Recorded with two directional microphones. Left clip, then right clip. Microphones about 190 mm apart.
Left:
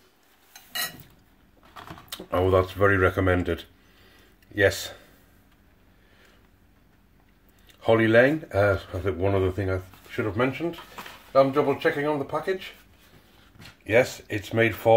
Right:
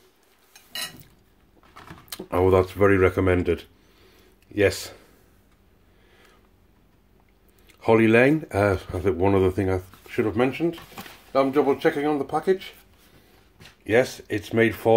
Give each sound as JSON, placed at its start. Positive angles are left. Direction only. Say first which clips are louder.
{"t": 2.0, "sound": "speech", "louder": "right 3 dB", "side_deg": -25}
{"t": 7.8, "sound": "speech", "louder": "right 1 dB", "side_deg": -30}
{"t": 13.8, "sound": "speech", "louder": "right 1 dB", "side_deg": -25}